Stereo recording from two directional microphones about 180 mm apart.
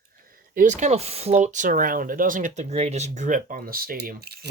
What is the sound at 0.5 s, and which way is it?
Speech, 45° right (ahead or behind).